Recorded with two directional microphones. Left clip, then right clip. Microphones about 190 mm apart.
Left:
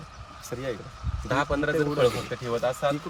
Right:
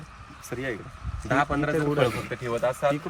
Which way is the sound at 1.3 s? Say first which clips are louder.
Right 1 dB; 10° left (ahead or behind).